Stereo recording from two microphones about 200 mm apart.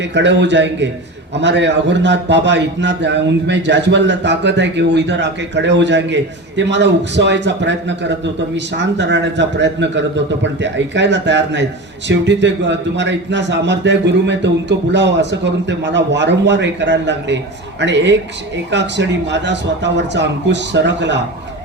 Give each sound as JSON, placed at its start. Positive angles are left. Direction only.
{"t": 0.0, "sound": "a man's voice", "side_deg": -60}